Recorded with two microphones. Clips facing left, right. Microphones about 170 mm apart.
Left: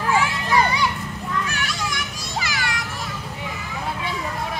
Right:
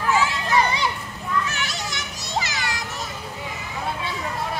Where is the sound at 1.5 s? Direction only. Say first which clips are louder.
Left 2 dB; 25° right (ahead or behind).